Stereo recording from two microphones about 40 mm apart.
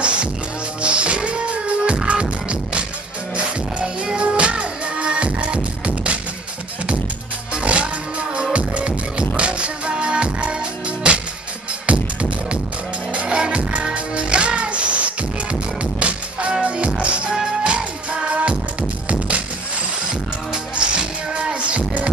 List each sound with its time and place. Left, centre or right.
0.0 s music: right
3.3 s music: right
7.5 s music: right
11.8 s music: right
20.5 s music: right